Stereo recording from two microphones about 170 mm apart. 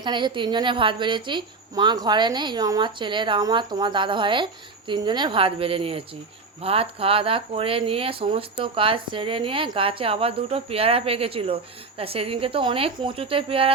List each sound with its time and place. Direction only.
0.0 s a woman's voice: 25° right (ahead or behind)